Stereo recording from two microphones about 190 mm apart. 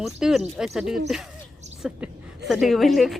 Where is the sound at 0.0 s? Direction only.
Centre (ahead or behind).